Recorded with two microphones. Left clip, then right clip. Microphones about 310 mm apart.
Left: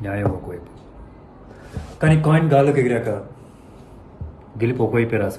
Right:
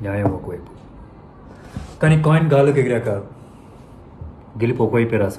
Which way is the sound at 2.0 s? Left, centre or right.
Centre.